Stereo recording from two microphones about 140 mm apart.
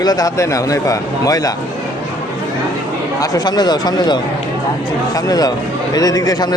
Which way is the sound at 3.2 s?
25° left (ahead or behind).